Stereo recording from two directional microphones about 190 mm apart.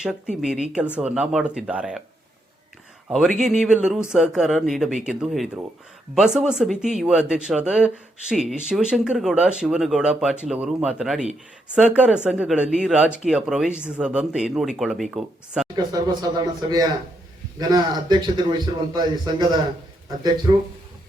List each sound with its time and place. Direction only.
0.0 s speech: 5° right (ahead or behind)
3.1 s speech: centre (ahead or behind)
15.7 s a man's voice: 20° right (ahead or behind)